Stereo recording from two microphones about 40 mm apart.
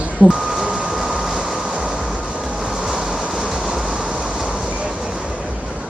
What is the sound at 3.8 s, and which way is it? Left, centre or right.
Train, right.